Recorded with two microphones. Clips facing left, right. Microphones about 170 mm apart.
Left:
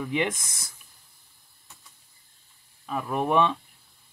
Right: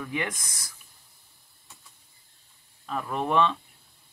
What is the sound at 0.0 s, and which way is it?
Speech, 20° left (ahead or behind).